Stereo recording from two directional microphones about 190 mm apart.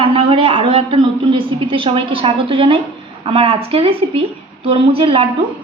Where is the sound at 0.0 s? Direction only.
30° right (ahead or behind).